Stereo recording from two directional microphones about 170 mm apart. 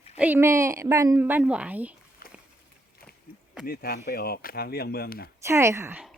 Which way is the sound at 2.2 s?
60° left (ahead or behind).